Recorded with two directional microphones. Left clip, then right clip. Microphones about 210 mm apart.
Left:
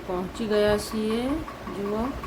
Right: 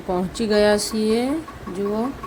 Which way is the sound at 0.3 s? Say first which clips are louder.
Right 5 dB; 25° right (ahead or behind).